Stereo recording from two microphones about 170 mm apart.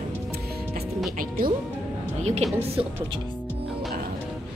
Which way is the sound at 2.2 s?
40° right (ahead or behind).